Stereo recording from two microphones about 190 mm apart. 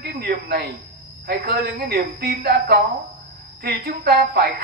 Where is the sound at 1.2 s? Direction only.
50° right (ahead or behind).